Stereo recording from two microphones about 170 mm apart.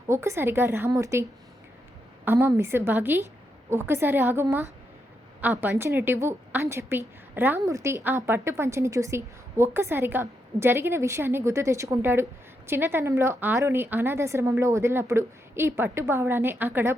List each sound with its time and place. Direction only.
0.1 s a woman's voice: 15° right (ahead or behind)
2.2 s a woman's voice: 15° right (ahead or behind)